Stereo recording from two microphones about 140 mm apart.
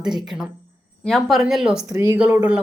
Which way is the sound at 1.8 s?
25° right (ahead or behind).